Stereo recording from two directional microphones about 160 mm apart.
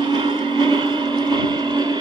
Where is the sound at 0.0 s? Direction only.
30° right (ahead or behind).